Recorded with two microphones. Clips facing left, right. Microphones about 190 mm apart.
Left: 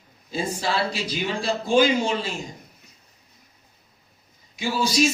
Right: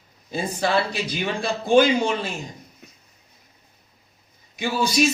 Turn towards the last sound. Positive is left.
turn(degrees=-55)  # may be behind; listen again after turning